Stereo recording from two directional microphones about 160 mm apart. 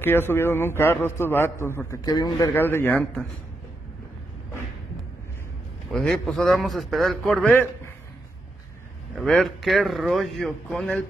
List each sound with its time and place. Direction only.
0.0 s a man's voice: 15° left (ahead or behind)
2.0 s a man's voice: 25° left (ahead or behind)
2.5 s a man's voice: 15° left (ahead or behind)
5.9 s speech: 5° left (ahead or behind)
9.2 s speech: 5° left (ahead or behind)